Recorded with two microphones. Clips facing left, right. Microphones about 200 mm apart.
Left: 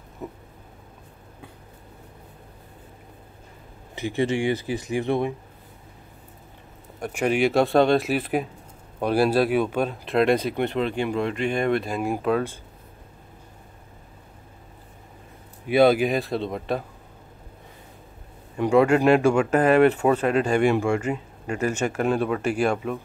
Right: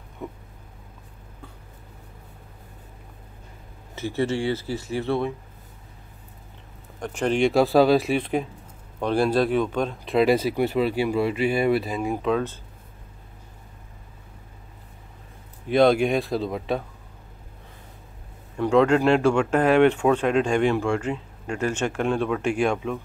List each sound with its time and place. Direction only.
0.2 s speech: 5° left (ahead or behind)
3.9 s speech: 15° left (ahead or behind)
7.0 s speech: 10° left (ahead or behind)
15.7 s speech: 5° left (ahead or behind)
18.6 s speech: 10° left (ahead or behind)